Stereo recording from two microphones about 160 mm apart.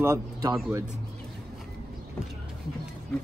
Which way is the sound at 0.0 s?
15° right (ahead or behind).